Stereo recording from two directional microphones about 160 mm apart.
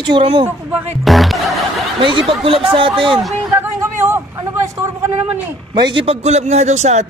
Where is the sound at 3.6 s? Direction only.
15° right (ahead or behind).